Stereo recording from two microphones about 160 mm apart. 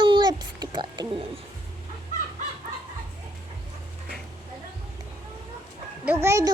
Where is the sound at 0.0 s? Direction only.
30° right (ahead or behind).